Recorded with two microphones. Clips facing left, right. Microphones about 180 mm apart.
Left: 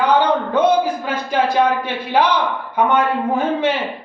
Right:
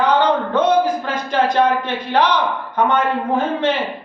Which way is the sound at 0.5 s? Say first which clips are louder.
Left 2 dB; 10° left (ahead or behind).